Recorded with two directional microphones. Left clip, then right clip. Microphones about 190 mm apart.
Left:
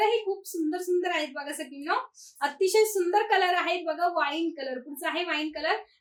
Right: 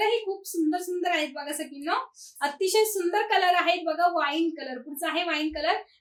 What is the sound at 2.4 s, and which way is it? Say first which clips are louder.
A woman's voice: even; 20° left (ahead or behind).